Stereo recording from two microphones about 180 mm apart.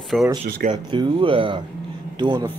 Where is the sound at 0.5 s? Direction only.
50° right (ahead or behind).